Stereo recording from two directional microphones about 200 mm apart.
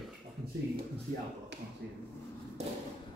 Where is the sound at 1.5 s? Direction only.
60° right (ahead or behind).